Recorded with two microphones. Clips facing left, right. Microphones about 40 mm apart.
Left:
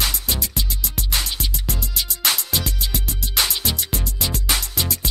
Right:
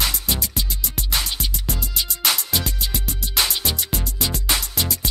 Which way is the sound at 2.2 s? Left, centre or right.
Centre.